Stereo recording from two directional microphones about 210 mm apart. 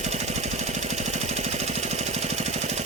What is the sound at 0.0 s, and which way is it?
Vehicle, 30° right (ahead or behind).